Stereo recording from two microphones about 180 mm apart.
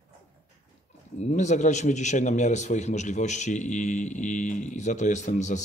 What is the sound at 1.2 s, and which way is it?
A man's voice, 40° left (ahead or behind).